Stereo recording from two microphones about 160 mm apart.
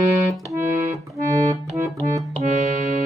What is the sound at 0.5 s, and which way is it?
Accordion, 15° right (ahead or behind).